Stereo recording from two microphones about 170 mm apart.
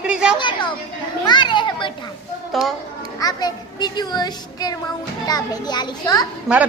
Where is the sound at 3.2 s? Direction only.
25° left (ahead or behind).